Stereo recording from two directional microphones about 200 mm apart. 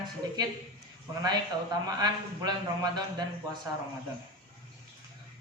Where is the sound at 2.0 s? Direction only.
20° right (ahead or behind).